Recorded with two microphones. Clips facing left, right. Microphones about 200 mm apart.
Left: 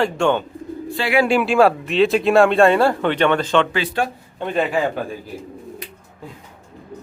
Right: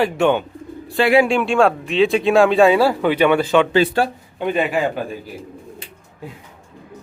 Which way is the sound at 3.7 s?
35° right (ahead or behind).